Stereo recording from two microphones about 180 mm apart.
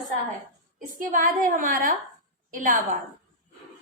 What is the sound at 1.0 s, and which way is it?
A woman's voice, 50° right (ahead or behind).